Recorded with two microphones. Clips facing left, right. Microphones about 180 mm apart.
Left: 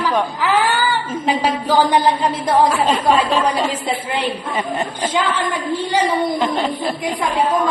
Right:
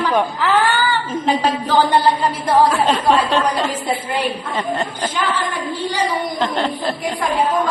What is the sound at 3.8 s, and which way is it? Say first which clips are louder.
Speech: even; 25° left (ahead or behind).